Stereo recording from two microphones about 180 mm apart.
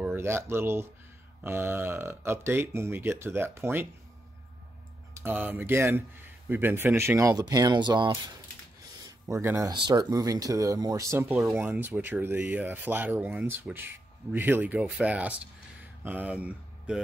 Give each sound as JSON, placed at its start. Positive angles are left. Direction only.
{"t": 0.0, "sound": "speech", "side_deg": -10}
{"t": 5.1, "sound": "speech", "side_deg": -10}